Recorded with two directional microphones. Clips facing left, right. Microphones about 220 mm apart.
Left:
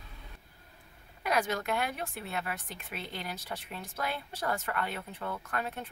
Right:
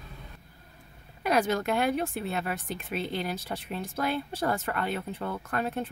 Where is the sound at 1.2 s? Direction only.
30° right (ahead or behind).